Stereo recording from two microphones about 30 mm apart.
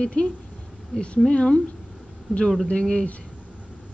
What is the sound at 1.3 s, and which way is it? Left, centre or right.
Speech, left.